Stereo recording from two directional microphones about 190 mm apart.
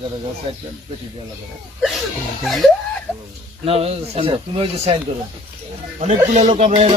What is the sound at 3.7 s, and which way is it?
Speech, 30° right (ahead or behind).